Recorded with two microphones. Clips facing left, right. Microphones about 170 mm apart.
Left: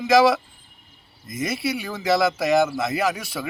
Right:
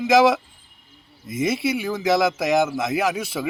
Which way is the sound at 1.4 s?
20° right (ahead or behind).